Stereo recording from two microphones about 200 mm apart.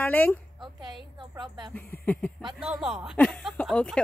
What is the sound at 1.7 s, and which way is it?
Speech, 10° left (ahead or behind).